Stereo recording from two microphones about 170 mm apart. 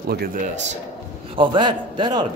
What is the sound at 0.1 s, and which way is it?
Speech, 65° right (ahead or behind).